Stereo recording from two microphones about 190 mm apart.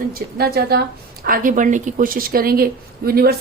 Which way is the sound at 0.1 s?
55° right (ahead or behind).